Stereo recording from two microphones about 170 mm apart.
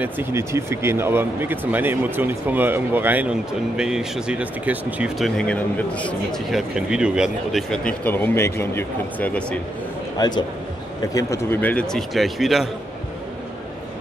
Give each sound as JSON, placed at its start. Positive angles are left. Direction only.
{"t": 0.0, "sound": "speech", "side_deg": -15}
{"t": 5.4, "sound": "a man's voice", "side_deg": 5}
{"t": 10.1, "sound": "speech", "side_deg": 25}